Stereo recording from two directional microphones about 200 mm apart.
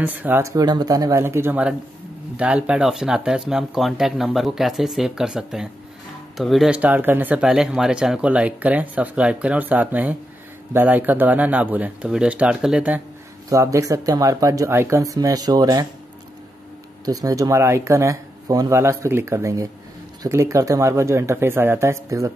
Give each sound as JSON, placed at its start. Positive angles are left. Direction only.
{"t": 0.0, "sound": "speech", "side_deg": -10}
{"t": 13.5, "sound": "speech", "side_deg": -15}
{"t": 17.0, "sound": "speech", "side_deg": -20}